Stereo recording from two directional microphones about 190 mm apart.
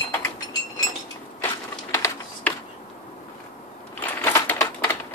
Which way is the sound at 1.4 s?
15° left (ahead or behind).